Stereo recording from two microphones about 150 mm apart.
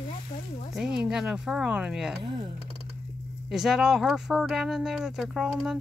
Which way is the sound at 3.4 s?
Centre (ahead or behind).